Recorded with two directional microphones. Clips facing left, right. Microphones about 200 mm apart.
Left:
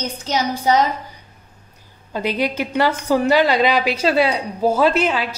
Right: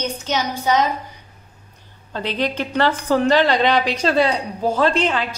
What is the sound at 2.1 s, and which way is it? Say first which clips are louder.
A woman's voice: left 2 dB; 10° left (ahead or behind).